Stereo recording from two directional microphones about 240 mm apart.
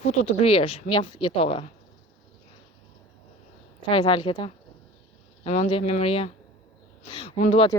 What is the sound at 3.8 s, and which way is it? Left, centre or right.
Speech, left.